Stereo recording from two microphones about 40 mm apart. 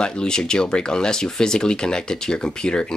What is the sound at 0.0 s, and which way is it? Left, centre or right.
Speech, centre.